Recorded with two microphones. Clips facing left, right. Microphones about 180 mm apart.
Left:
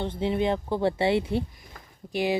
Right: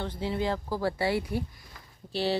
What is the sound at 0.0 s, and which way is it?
Speech, 20° left (ahead or behind).